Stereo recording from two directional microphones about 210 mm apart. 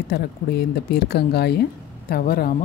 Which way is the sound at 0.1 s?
50° left (ahead or behind).